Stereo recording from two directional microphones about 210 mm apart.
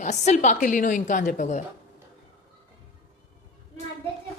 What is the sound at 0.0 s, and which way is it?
A woman's voice, 35° left (ahead or behind).